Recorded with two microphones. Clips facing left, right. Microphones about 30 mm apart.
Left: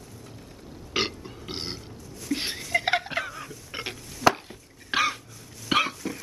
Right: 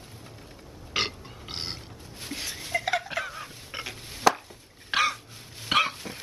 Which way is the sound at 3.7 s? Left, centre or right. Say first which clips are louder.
Left 2 dB; centre.